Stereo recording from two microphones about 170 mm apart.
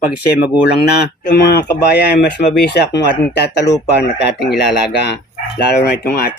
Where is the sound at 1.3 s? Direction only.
70° left (ahead or behind).